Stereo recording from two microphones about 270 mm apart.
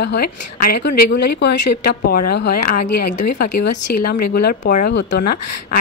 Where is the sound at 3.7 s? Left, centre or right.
Left.